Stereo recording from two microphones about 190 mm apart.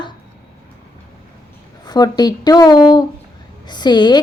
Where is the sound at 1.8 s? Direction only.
20° left (ahead or behind).